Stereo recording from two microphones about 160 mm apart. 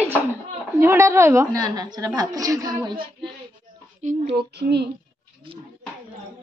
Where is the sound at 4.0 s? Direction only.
45° right (ahead or behind).